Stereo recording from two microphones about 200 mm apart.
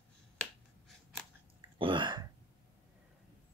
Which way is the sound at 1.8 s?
25° right (ahead or behind).